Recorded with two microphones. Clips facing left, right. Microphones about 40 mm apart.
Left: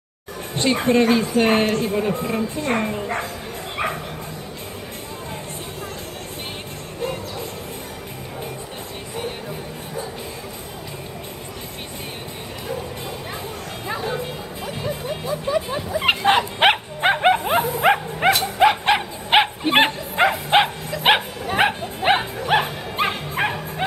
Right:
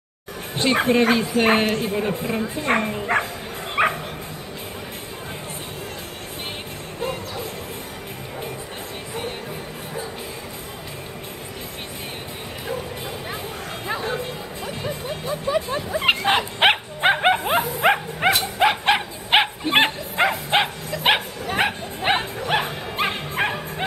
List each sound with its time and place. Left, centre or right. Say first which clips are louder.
0.8 s speech: left 4 dB; centre
3.8 s bow-wow: right 5 dB; right
7.0 s music: left 1 dB; centre
13.8 s music: even; centre
16.0 s bow-wow: left 2 dB; centre
17.6 s dog: left 1 dB; centre
19.7 s bow-wow: left 1 dB; centre